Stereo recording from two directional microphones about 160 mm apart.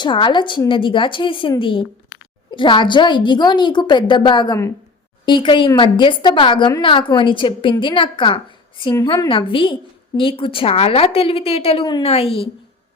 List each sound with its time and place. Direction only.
0.0 s a woman's voice: 30° left (ahead or behind)